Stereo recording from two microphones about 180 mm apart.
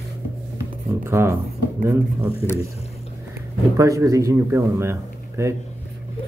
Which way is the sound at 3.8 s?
15° right (ahead or behind).